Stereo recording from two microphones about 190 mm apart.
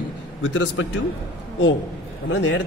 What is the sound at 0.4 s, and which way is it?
Speech, 75° left (ahead or behind).